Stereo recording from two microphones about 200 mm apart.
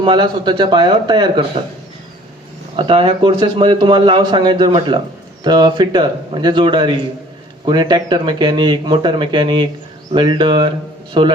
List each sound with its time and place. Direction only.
0.0 s a man's voice: 25° right (ahead or behind)
2.7 s a man's voice: 25° right (ahead or behind)